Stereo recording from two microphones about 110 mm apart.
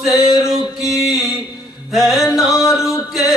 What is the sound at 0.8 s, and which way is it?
Mantra, 5° right (ahead or behind).